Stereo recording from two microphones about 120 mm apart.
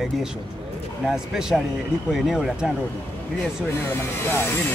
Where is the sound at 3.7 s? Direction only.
20° left (ahead or behind).